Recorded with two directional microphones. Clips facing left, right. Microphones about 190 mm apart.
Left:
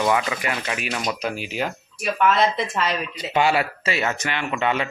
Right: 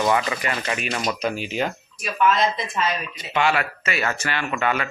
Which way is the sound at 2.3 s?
65° left (ahead or behind).